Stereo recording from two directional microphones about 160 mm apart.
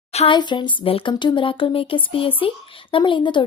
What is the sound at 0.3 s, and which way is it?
Speech, 30° left (ahead or behind).